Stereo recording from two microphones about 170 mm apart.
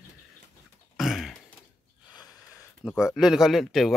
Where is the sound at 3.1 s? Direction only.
5° right (ahead or behind).